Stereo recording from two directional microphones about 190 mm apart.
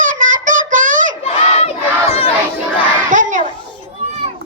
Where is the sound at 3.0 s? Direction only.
40° right (ahead or behind).